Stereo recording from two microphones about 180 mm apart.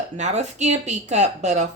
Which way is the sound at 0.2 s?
40° right (ahead or behind).